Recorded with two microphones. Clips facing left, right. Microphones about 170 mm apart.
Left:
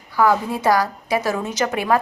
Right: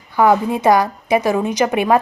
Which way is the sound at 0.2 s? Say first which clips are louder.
Right 4 dB; 20° right (ahead or behind).